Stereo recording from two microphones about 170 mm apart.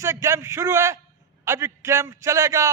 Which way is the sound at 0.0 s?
15° right (ahead or behind).